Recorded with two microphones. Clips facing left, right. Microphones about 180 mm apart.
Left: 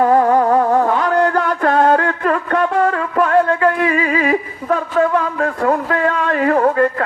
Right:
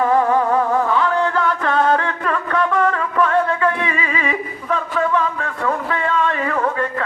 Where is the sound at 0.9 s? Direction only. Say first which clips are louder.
Left 3 dB; 40° left (ahead or behind).